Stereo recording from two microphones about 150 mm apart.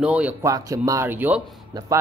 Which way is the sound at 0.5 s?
20° right (ahead or behind).